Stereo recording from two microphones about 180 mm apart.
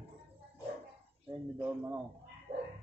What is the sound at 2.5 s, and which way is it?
Dog, 40° right (ahead or behind).